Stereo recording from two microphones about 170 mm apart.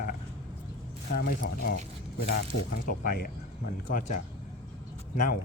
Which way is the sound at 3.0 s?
60° left (ahead or behind).